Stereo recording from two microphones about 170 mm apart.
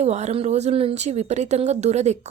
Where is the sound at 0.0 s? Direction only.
40° right (ahead or behind).